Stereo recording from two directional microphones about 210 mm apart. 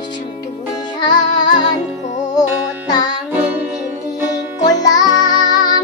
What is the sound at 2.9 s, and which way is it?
Music, 20° left (ahead or behind).